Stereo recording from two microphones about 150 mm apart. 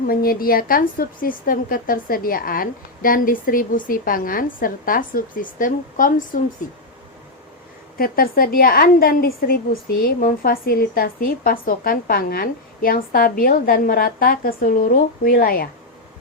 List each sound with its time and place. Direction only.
0.1 s speech: 75° left (ahead or behind)
7.9 s speech: 75° left (ahead or behind)